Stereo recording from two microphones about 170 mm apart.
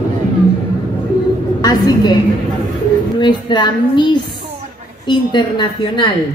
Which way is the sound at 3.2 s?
25° left (ahead or behind).